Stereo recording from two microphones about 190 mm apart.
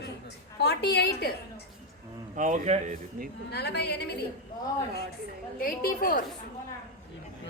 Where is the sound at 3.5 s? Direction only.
60° left (ahead or behind).